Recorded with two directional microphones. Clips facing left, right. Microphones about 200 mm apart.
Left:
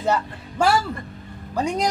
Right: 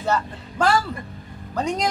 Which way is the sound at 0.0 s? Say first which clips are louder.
Left 1 dB; 10° left (ahead or behind).